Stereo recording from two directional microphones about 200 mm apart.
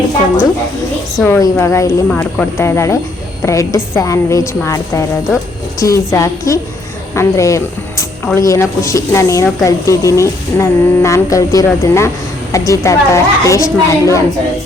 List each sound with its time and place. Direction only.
1.2 s speech: 15° left (ahead or behind)